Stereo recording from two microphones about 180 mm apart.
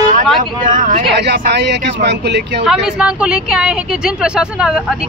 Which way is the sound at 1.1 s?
70° right (ahead or behind).